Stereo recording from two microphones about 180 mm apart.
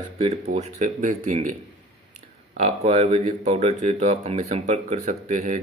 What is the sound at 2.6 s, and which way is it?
Speech, 40° right (ahead or behind).